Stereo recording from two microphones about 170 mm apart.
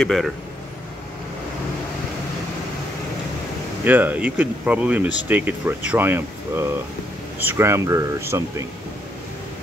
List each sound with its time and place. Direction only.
0.0 s speech: centre (ahead or behind)
3.8 s speech: 10° right (ahead or behind)